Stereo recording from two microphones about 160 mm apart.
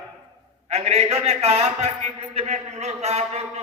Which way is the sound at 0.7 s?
40° right (ahead or behind).